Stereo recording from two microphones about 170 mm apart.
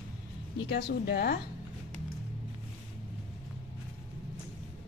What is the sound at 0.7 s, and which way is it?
Speech, 70° left (ahead or behind).